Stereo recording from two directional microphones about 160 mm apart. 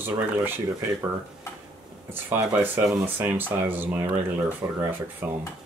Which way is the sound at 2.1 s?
10° right (ahead or behind).